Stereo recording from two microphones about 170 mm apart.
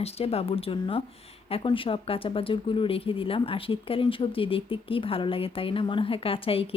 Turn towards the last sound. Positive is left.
turn(degrees=35)  # may be behind; listen again after turning